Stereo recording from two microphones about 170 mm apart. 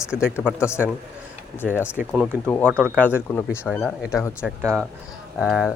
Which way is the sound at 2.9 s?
10° left (ahead or behind).